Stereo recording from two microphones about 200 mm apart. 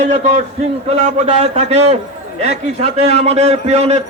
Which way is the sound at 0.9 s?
35° right (ahead or behind).